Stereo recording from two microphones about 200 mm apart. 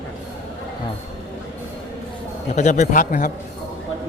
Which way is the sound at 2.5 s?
35° left (ahead or behind).